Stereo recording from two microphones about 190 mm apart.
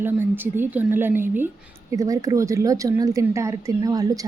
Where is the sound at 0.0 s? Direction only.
10° right (ahead or behind).